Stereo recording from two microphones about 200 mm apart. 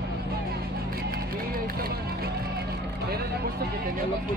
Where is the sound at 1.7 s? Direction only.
50° right (ahead or behind).